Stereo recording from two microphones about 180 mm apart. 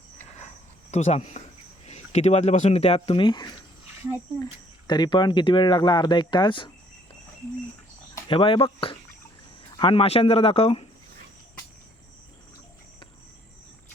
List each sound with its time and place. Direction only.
0.3 s cricket: 40° left (ahead or behind)
1.9 s speech: 40° left (ahead or behind)
4.9 s speech: 25° left (ahead or behind)
8.3 s speech: 30° left (ahead or behind)